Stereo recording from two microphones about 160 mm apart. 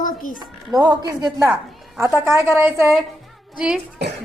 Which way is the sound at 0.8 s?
25° right (ahead or behind).